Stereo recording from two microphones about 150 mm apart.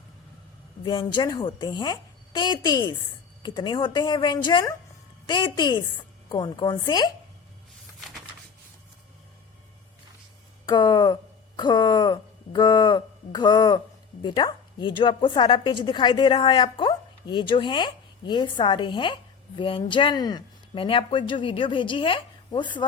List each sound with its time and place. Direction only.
0.9 s a woman's voice: 30° left (ahead or behind)
10.7 s speech: 30° left (ahead or behind)